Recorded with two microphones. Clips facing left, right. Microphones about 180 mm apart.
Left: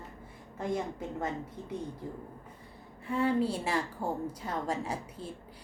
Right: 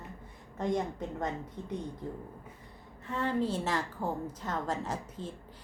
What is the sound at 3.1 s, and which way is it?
A woman's voice, 10° left (ahead or behind).